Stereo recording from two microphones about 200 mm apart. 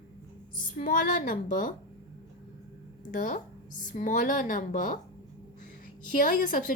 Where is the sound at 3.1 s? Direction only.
40° left (ahead or behind).